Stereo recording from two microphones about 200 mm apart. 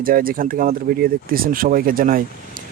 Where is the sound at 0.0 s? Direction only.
45° right (ahead or behind).